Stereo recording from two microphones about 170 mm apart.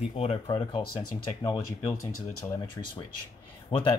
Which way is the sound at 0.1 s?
35° left (ahead or behind).